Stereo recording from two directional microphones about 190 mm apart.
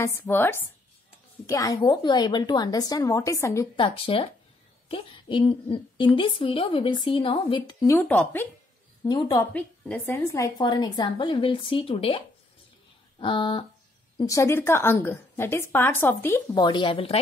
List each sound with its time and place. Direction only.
0.0 s a woman's voice: 10° left (ahead or behind)
3.7 s a woman's voice: 25° left (ahead or behind)
7.9 s a woman's voice: 10° left (ahead or behind)
9.0 s a woman's voice: 20° left (ahead or behind)
9.5 s a woman's voice: 5° left (ahead or behind); by 12.2 s 30° left (ahead or behind)
13.2 s a woman's voice: 25° left (ahead or behind)